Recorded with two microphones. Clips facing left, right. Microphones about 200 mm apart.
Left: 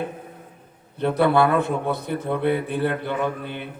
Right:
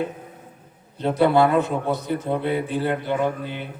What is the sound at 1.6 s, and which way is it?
A man's voice, 55° left (ahead or behind).